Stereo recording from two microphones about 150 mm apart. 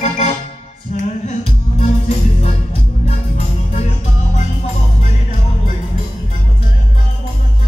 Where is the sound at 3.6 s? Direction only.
55° left (ahead or behind).